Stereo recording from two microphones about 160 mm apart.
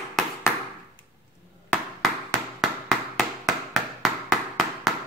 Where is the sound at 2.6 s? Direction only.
Centre (ahead or behind).